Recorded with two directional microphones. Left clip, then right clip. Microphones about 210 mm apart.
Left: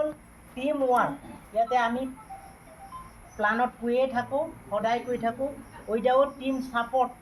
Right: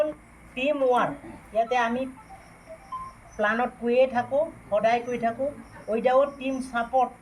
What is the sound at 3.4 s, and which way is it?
Speech, 45° right (ahead or behind).